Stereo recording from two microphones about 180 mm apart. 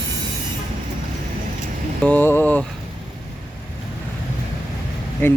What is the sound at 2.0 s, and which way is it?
Speech, 10° left (ahead or behind).